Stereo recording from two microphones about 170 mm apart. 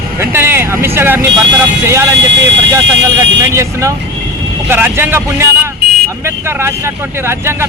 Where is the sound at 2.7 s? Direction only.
15° right (ahead or behind).